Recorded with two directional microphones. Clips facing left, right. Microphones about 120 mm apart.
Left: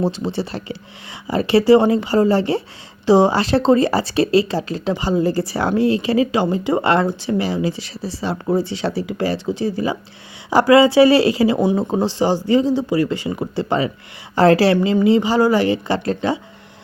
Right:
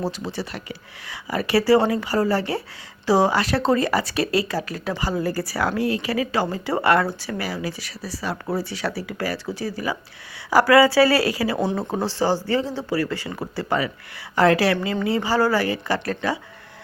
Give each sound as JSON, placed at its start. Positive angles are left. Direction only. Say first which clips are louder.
{"t": 0.0, "sound": "speech", "louder": "left 6 dB", "side_deg": 25}
{"t": 14.8, "sound": "speech", "louder": "left 8 dB", "side_deg": 20}